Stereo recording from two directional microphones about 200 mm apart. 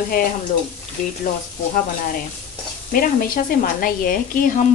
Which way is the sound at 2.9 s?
45° left (ahead or behind).